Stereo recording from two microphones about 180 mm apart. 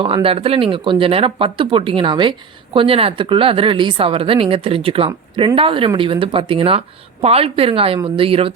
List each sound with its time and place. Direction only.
0.0 s speech: 30° right (ahead or behind)